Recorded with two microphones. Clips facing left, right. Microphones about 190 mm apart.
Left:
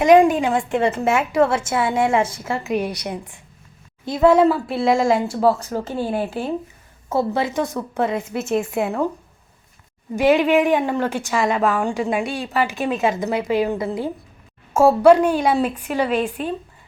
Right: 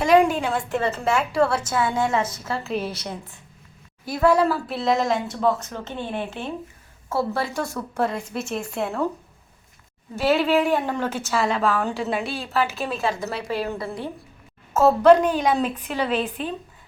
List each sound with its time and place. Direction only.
0.0 s a woman's voice: 15° left (ahead or behind)
0.7 s speech: 25° left (ahead or behind)
2.6 s a woman's voice: 15° left (ahead or behind); by 6.5 s 35° left (ahead or behind)
7.1 s speech: 20° left (ahead or behind)
7.9 s a woman's voice: centre (ahead or behind)
8.4 s a woman's voice: 25° left (ahead or behind)
10.2 s a woman's voice: 15° left (ahead or behind)